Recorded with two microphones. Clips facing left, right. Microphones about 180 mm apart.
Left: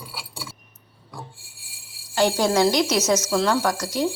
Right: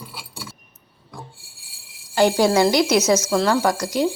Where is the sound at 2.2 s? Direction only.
10° right (ahead or behind).